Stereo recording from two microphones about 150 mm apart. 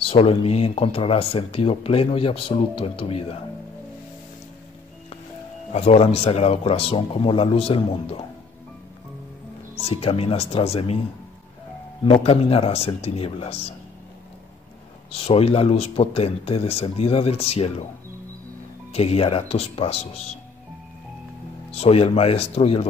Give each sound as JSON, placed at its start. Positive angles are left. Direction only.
{"t": 0.0, "sound": "speech", "side_deg": 40}
{"t": 5.7, "sound": "speech", "side_deg": 45}
{"t": 9.8, "sound": "speech", "side_deg": 40}
{"t": 12.0, "sound": "speech", "side_deg": 40}
{"t": 15.0, "sound": "speech", "side_deg": 40}
{"t": 18.9, "sound": "speech", "side_deg": 40}
{"t": 21.7, "sound": "speech", "side_deg": 45}